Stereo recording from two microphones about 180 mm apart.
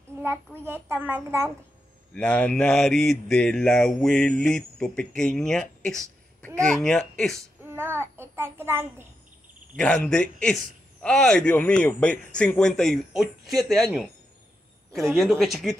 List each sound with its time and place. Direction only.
0.7 s a child's voice: 10° right (ahead or behind)
2.1 s mantra: 5° left (ahead or behind)
7.7 s a child's voice: 15° right (ahead or behind)
9.8 s mantra: 5° left (ahead or behind)
15.0 s mantra: centre (ahead or behind)